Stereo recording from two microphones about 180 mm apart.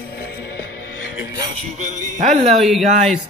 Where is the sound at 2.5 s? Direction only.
Centre (ahead or behind).